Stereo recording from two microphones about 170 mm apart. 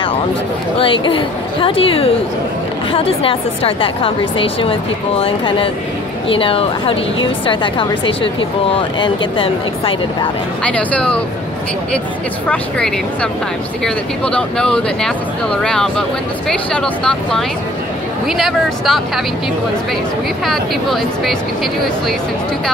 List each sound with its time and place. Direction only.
0.7 s a woman's voice: 30° left (ahead or behind)
10.6 s speech: 10° left (ahead or behind)
12.4 s speech: 5° left (ahead or behind)
20.4 s speech: centre (ahead or behind)